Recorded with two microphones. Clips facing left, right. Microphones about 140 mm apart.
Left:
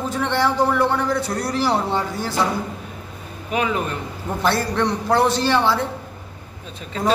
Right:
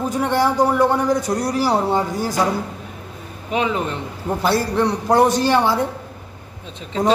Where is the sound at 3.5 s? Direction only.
25° right (ahead or behind).